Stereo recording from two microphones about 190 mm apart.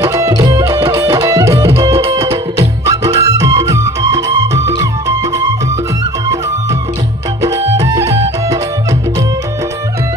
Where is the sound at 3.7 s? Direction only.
20° right (ahead or behind).